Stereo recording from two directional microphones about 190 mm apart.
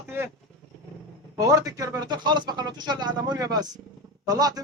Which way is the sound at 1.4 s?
20° right (ahead or behind).